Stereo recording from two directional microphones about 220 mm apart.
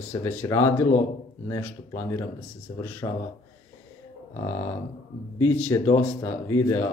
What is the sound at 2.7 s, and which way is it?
Speech, 20° left (ahead or behind).